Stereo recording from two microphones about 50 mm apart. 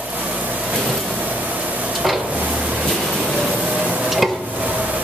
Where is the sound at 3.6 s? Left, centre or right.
Right.